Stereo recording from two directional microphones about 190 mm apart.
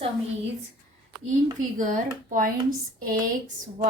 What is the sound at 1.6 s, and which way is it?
Speech, 40° right (ahead or behind).